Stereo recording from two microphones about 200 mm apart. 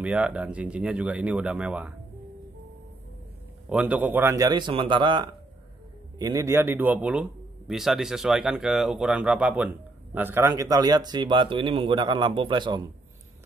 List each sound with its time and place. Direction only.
0.0 s speech: 5° right (ahead or behind)
3.6 s speech: 5° right (ahead or behind); by 12.8 s 25° right (ahead or behind)